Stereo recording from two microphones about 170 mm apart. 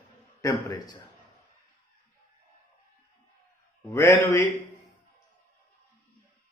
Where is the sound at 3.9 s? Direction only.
20° left (ahead or behind).